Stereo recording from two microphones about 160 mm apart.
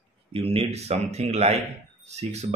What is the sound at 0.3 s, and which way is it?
Speech, 35° right (ahead or behind).